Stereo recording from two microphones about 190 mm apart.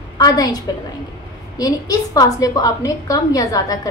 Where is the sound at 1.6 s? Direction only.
20° left (ahead or behind).